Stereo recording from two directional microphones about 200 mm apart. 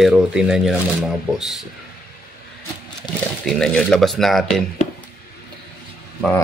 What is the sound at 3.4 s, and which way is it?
Speech, 5° left (ahead or behind).